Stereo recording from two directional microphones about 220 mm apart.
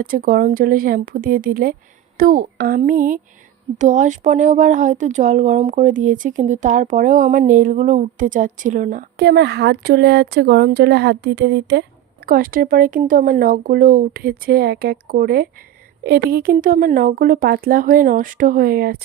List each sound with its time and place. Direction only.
0.0 s speech: 40° right (ahead or behind)